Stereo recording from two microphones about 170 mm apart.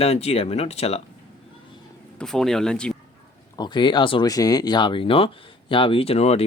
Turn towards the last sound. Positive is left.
turn(degrees=35)  # may be behind; listen again after turning